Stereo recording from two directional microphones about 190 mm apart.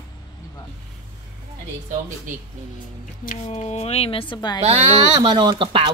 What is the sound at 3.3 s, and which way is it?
Speech, 40° left (ahead or behind).